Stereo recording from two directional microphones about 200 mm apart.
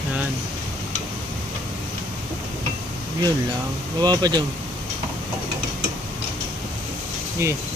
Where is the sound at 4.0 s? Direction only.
20° right (ahead or behind).